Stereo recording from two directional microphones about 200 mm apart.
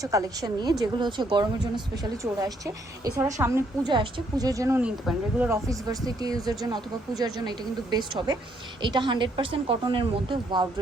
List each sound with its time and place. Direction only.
0.0 s a woman's voice: 15° right (ahead or behind)